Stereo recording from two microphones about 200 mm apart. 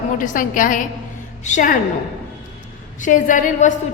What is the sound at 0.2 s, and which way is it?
A woman's voice, 40° left (ahead or behind).